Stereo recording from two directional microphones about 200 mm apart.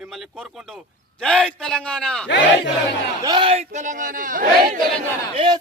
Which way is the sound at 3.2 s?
25° right (ahead or behind).